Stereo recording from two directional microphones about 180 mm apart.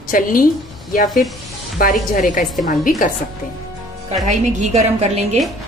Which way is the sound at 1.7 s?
50° left (ahead or behind).